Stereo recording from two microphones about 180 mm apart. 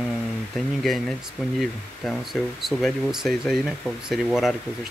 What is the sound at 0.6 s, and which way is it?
Speech, centre (ahead or behind).